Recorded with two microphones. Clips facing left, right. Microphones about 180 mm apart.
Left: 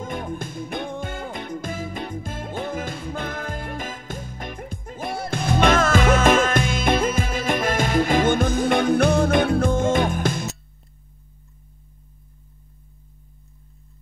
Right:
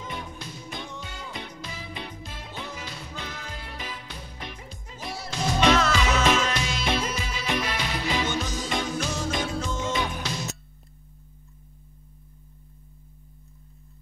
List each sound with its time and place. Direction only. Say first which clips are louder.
0.0 s music: left 8 dB; 50° left (ahead or behind)